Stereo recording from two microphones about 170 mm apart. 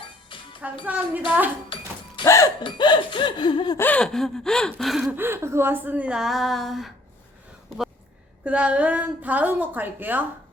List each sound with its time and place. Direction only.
0.0 s music: 30° left (ahead or behind)
0.9 s a woman's voice: 10° right (ahead or behind)
2.2 s laughter: 20° left (ahead or behind)
3.8 s gasp: 10° left (ahead or behind)
5.1 s a woman's voice: 15° right (ahead or behind)
8.4 s a woman's voice: 10° right (ahead or behind)